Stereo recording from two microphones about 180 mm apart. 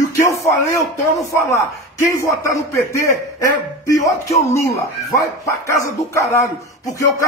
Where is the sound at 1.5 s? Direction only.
15° left (ahead or behind).